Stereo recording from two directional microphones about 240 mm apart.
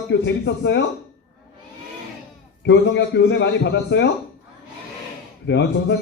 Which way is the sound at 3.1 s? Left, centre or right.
Left.